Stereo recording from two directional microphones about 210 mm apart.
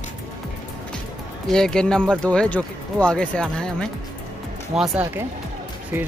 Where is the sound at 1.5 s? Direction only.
5° left (ahead or behind).